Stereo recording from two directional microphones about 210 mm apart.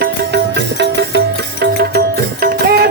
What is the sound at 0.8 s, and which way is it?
Music, 55° right (ahead or behind).